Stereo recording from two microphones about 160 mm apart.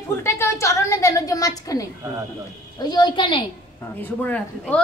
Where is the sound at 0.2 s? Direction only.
15° left (ahead or behind).